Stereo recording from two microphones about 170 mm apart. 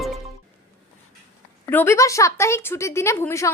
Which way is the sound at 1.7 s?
15° left (ahead or behind).